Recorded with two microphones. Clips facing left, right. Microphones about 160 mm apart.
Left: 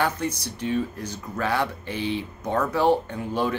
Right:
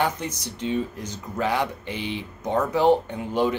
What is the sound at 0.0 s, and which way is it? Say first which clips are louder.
Speech: even; 20° right (ahead or behind).